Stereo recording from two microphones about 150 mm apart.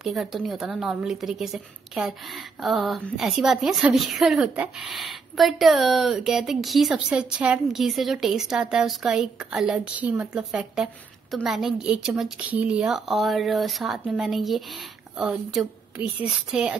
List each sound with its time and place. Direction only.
0.0 s a woman's voice: centre (ahead or behind)